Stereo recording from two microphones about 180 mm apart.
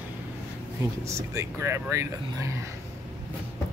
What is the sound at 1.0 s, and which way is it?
Speech, 15° right (ahead or behind).